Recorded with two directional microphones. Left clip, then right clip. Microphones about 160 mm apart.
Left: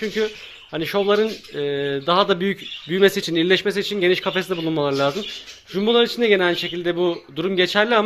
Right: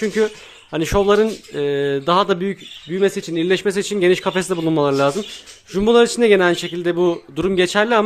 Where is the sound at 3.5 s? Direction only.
35° right (ahead or behind).